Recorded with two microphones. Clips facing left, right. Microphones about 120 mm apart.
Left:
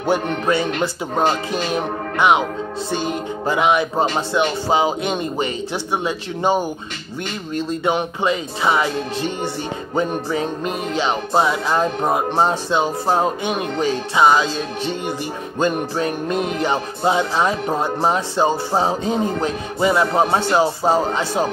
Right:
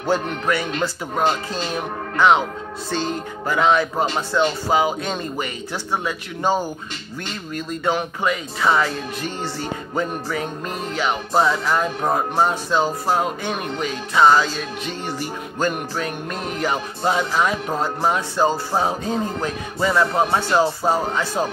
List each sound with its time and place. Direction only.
0.0 s music: 25° left (ahead or behind)
1.5 s speech: 15° left (ahead or behind)
3.4 s music: 15° left (ahead or behind)
9.9 s music: 20° left (ahead or behind)
14.1 s music: 15° left (ahead or behind)
20.2 s music: 25° left (ahead or behind)